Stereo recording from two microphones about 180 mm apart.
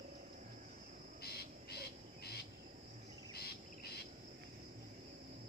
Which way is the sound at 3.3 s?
65° left (ahead or behind).